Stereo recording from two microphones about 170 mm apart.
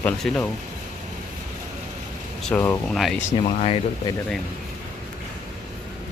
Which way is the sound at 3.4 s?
35° left (ahead or behind).